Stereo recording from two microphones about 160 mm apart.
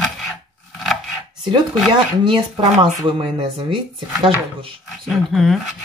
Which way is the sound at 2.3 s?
35° right (ahead or behind).